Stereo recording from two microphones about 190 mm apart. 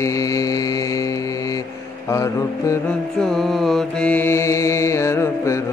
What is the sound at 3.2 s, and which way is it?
Mantra, centre (ahead or behind).